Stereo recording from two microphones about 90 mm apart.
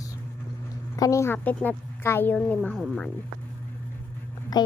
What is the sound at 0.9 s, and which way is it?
Speech, 40° left (ahead or behind).